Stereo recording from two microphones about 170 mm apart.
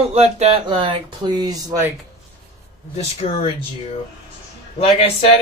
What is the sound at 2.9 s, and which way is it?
Speech, 35° left (ahead or behind).